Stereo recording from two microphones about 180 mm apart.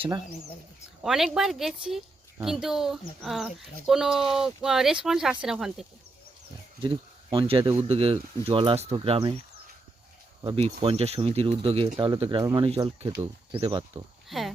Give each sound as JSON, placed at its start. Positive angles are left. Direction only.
{"t": 1.0, "sound": "speech", "side_deg": 0}
{"t": 6.8, "sound": "speech", "side_deg": -30}
{"t": 10.4, "sound": "speech", "side_deg": -30}
{"t": 12.6, "sound": "speech", "side_deg": -30}
{"t": 14.3, "sound": "a sound", "side_deg": 0}